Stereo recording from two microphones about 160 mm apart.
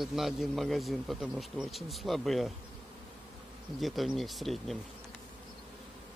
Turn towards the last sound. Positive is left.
turn(degrees=0)  # may be behind; listen again after turning